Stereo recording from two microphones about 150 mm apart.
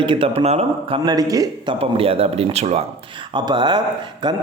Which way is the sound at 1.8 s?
40° right (ahead or behind).